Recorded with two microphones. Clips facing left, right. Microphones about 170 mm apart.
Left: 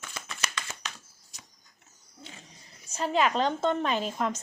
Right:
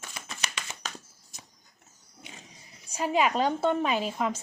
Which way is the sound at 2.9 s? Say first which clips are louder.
Right 1 dB; 10° right (ahead or behind).